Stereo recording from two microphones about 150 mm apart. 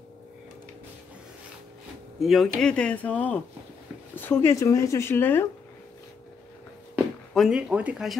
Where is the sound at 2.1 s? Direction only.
Centre (ahead or behind).